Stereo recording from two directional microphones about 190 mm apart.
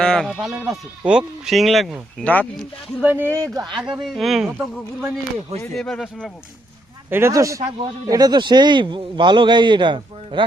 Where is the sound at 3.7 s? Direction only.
Centre (ahead or behind).